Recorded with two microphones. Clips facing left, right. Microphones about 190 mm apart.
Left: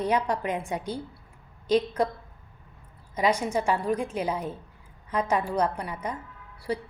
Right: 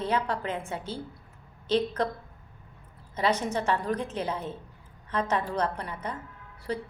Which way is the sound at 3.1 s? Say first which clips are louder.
Left 2 dB; 10° left (ahead or behind).